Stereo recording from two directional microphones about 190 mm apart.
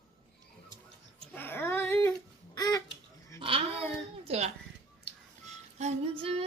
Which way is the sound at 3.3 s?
30° right (ahead or behind).